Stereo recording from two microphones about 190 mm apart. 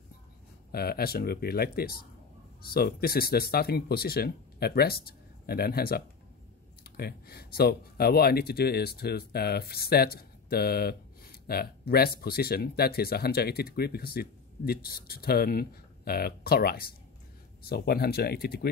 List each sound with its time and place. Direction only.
0.7 s speech: 55° left (ahead or behind)